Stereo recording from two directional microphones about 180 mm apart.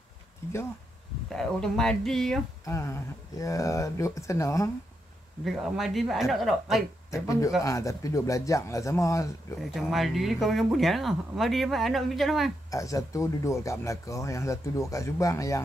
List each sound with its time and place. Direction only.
1.3 s speech: 5° left (ahead or behind)
2.6 s speech: 15° left (ahead or behind)
5.4 s speech: centre (ahead or behind)
7.1 s speech: 20° left (ahead or behind)
9.6 s speech: centre (ahead or behind)
12.7 s speech: 20° left (ahead or behind)